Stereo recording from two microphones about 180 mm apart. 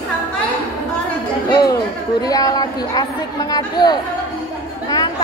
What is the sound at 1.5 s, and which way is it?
Chatter, 20° left (ahead or behind).